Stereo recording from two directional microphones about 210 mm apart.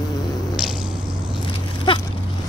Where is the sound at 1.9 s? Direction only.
25° left (ahead or behind).